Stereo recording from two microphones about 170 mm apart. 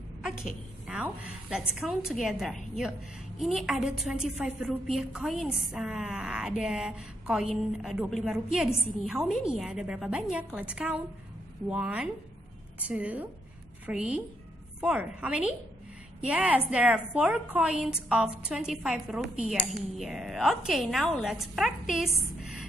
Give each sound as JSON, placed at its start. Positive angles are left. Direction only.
{"t": 0.2, "sound": "a woman's voice", "side_deg": 0}